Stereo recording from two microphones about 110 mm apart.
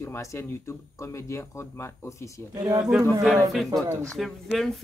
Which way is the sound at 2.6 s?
35° right (ahead or behind).